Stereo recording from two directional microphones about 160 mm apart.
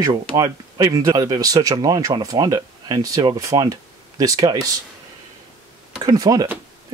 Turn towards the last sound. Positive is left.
turn(degrees=-25)  # may be behind; listen again after turning